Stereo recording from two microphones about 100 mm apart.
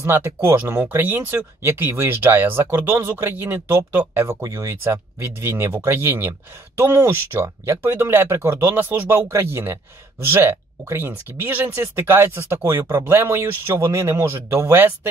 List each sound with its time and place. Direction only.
0.0 s speech: 25° right (ahead or behind)